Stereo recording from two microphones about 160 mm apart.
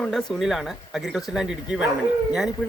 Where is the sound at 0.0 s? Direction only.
5° left (ahead or behind).